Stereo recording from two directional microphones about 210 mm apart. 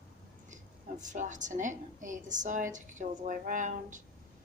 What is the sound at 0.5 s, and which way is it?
A woman's voice, 35° right (ahead or behind).